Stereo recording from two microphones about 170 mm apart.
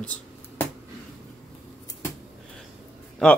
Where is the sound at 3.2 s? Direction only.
Centre (ahead or behind).